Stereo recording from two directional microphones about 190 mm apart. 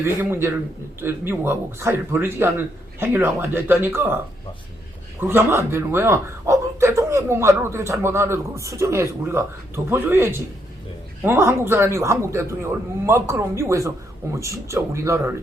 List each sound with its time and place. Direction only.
0.0 s a man's voice: 15° right (ahead or behind)
5.2 s a man's voice: 10° right (ahead or behind)